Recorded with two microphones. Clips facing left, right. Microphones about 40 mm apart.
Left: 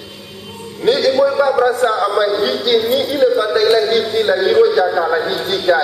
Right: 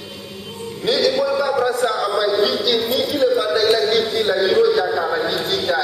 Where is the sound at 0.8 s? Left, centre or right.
Centre.